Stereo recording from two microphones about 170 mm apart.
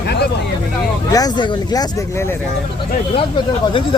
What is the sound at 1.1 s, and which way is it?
Speech, 25° left (ahead or behind).